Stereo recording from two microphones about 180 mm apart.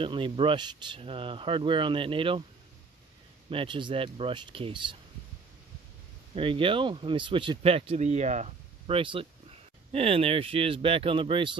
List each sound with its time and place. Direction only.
0.0 s speech: 30° right (ahead or behind)
3.4 s speech: 30° right (ahead or behind)
6.3 s speech: 30° right (ahead or behind)